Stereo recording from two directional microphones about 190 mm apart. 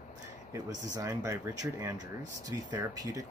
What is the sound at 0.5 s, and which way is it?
Speech, 20° right (ahead or behind).